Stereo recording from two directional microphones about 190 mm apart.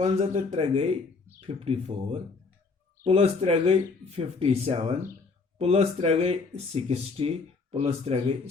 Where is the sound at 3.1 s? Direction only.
30° right (ahead or behind).